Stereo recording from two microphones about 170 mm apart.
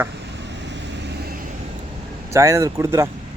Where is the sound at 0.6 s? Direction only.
90° right.